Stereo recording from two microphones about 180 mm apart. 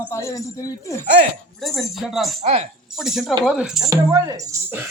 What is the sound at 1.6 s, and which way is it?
Speech, centre (ahead or behind).